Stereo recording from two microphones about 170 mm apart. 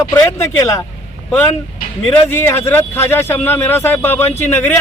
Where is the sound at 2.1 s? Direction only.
15° left (ahead or behind).